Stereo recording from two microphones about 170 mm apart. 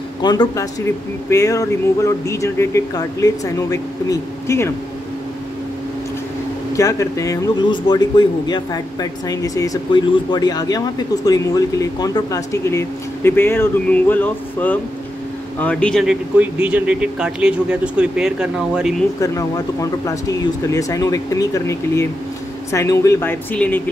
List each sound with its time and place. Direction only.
0.2 s a man's voice: 25° left (ahead or behind)
6.7 s a man's voice: 20° left (ahead or behind); by 18.9 s 5° right (ahead or behind)
19.2 s a man's voice: 20° left (ahead or behind)
23.5 s speech: 5° left (ahead or behind)